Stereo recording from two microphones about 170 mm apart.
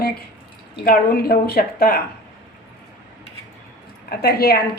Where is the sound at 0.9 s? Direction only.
65° left (ahead or behind).